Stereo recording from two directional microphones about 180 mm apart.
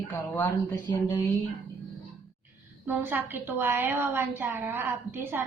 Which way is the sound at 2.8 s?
10° right (ahead or behind).